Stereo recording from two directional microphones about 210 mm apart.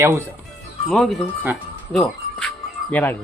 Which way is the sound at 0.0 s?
10° right (ahead or behind).